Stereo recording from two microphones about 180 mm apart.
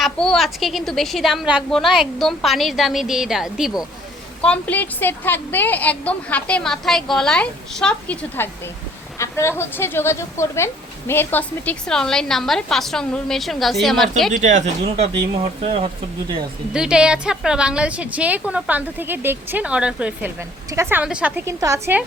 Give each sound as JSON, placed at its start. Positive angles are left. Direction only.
{"t": 0.0, "sound": "a woman's voice", "side_deg": 0}
{"t": 4.4, "sound": "a woman's voice", "side_deg": 10}
{"t": 14.4, "sound": "speech", "side_deg": -40}
{"t": 16.7, "sound": "a woman's voice", "side_deg": -5}